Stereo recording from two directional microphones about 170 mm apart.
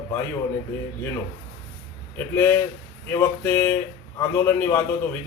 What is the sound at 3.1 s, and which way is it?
A man's voice, 15° left (ahead or behind).